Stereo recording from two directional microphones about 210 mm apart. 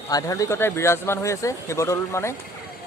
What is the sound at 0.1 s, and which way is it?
Speech, 15° left (ahead or behind).